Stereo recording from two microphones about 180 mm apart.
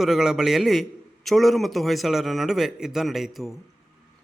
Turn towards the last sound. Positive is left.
turn(degrees=0)  # may be behind; listen again after turning